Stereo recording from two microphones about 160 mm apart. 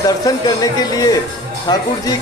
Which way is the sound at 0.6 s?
25° left (ahead or behind).